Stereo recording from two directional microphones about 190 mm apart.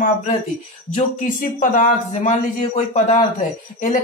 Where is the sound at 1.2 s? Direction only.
45° left (ahead or behind).